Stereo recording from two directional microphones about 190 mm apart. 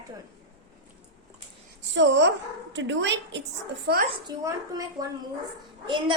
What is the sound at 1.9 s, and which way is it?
Speech, 70° right (ahead or behind).